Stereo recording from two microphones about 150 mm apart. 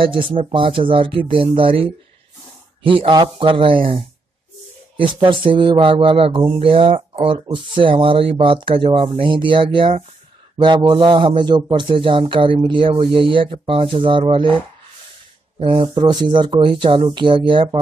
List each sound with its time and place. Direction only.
0.0 s a man's voice: 35° right (ahead or behind)
15.6 s a man's voice: 35° right (ahead or behind)